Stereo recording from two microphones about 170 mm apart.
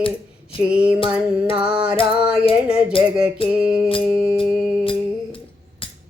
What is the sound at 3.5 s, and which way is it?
Music, 5° right (ahead or behind).